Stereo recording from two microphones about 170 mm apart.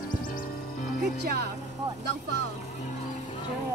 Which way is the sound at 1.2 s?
70° right (ahead or behind).